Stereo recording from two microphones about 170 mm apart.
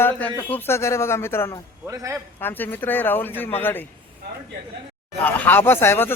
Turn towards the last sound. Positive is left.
turn(degrees=15)  # may be behind; listen again after turning